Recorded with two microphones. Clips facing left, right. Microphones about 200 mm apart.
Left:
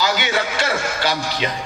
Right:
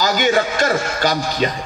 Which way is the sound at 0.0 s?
45° right (ahead or behind).